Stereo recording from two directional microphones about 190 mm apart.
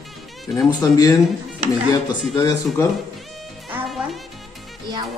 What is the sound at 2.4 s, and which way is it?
Speech, 20° left (ahead or behind).